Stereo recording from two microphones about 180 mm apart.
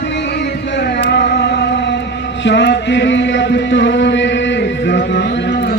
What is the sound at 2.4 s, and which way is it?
Chant, 75° left (ahead or behind).